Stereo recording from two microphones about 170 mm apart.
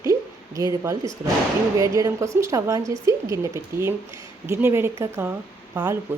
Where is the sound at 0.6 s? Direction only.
20° right (ahead or behind).